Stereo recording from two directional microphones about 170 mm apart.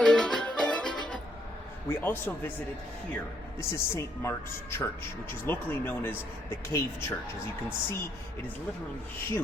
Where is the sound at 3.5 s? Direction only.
15° left (ahead or behind).